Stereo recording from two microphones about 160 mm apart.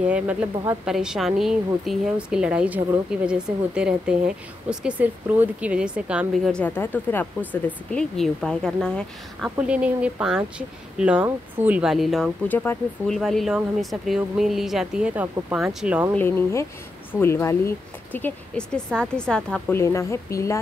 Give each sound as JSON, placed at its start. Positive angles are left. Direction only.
{"t": 0.0, "sound": "a woman's voice", "side_deg": -10}
{"t": 9.6, "sound": "a woman's voice", "side_deg": -10}
{"t": 12.4, "sound": "a woman's voice", "side_deg": 10}
{"t": 16.2, "sound": "speech", "side_deg": 15}
{"t": 19.8, "sound": "speech", "side_deg": 20}